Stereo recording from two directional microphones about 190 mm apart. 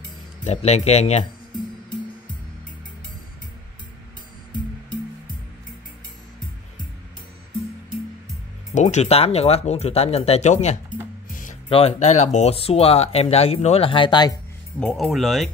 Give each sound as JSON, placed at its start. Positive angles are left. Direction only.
{"t": 0.4, "sound": "speech", "side_deg": 35}
{"t": 8.7, "sound": "speech", "side_deg": 40}
{"t": 11.2, "sound": "music", "side_deg": 45}
{"t": 11.7, "sound": "speech", "side_deg": 35}
{"t": 14.8, "sound": "speech", "side_deg": 0}